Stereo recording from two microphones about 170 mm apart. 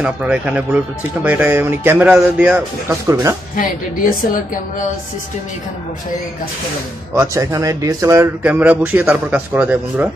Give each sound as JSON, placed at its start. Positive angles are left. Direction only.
{"t": 0.0, "sound": "speech", "side_deg": -5}
{"t": 3.5, "sound": "a woman's voice", "side_deg": 55}
{"t": 7.2, "sound": "speech", "side_deg": -20}